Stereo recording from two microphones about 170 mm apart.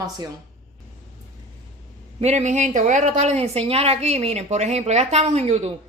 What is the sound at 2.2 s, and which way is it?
A woman's voice, 40° right (ahead or behind).